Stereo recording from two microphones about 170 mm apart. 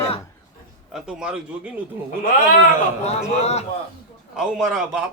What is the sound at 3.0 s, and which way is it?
Speech, 40° left (ahead or behind).